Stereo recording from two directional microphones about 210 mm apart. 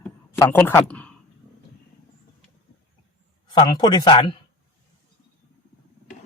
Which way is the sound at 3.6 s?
20° left (ahead or behind).